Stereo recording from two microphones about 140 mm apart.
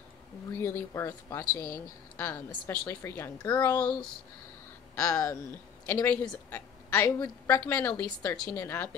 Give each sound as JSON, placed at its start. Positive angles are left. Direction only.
{"t": 0.5, "sound": "a woman's voice", "side_deg": 20}
{"t": 4.9, "sound": "a woman's voice", "side_deg": 20}